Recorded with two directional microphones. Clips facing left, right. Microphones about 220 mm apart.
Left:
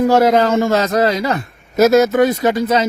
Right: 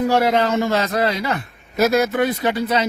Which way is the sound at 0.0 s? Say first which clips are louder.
Left 5 dB; 45° left (ahead or behind).